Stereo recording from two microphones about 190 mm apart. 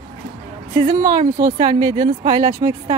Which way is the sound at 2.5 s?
25° right (ahead or behind).